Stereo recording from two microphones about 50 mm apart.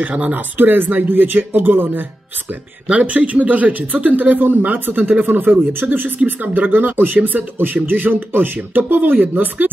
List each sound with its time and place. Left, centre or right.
0.3 s speech: right
2.9 s speech: right
3.2 s speech: right